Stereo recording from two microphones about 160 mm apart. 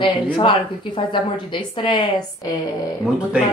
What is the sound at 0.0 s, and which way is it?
A woman's voice, 30° left (ahead or behind).